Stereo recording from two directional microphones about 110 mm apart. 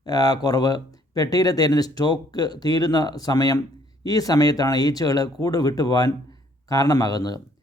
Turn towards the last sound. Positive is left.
turn(degrees=35)  # may be behind; listen again after turning